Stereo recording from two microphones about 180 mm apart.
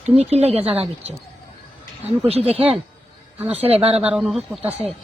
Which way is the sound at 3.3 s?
10° right (ahead or behind).